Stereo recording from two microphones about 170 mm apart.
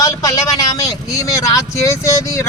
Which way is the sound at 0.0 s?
20° left (ahead or behind).